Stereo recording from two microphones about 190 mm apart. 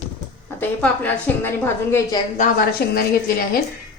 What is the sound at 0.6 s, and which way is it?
A woman's voice, 10° left (ahead or behind).